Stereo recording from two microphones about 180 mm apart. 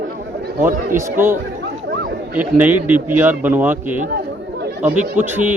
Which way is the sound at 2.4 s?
10° right (ahead or behind).